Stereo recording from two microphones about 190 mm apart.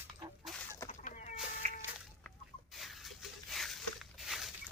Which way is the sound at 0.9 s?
40° left (ahead or behind).